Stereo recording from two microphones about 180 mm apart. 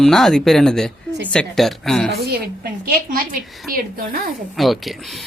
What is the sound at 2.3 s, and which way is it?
A woman's voice, 60° right (ahead or behind).